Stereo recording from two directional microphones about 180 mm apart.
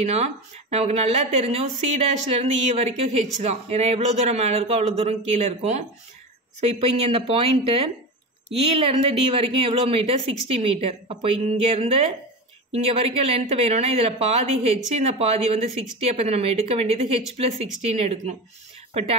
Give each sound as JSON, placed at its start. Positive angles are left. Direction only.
{"t": 0.0, "sound": "speech", "side_deg": -35}